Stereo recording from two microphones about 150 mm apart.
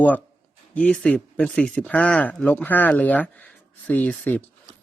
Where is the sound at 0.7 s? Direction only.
10° left (ahead or behind).